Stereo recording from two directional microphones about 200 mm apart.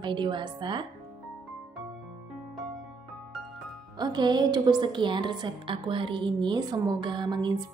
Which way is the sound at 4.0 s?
20° right (ahead or behind).